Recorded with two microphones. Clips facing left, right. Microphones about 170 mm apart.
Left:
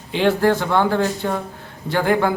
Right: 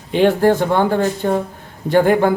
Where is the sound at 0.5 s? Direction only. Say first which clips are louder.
Right 3 dB; 15° right (ahead or behind).